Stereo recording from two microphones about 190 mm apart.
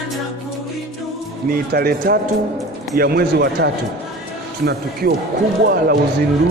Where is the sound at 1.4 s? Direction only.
50° right (ahead or behind).